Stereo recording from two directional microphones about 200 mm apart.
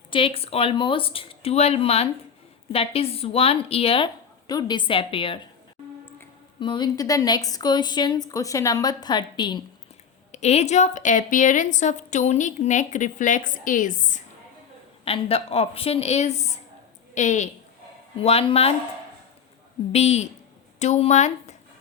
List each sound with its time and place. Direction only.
0.1 s a woman's voice: 25° left (ahead or behind)
6.6 s a woman's voice: 25° left (ahead or behind)
10.3 s a woman's voice: 35° left (ahead or behind)
15.0 s a woman's voice: 30° left (ahead or behind)
19.9 s a woman's voice: 35° left (ahead or behind)